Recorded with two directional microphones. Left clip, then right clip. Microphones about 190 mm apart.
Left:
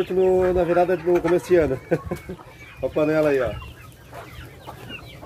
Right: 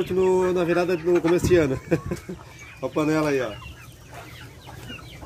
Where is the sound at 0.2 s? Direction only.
50° right (ahead or behind).